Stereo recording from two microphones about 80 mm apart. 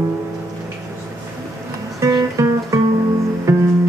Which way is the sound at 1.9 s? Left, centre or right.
Right.